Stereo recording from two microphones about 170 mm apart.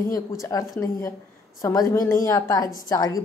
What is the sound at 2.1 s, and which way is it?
A woman's voice, 20° left (ahead or behind).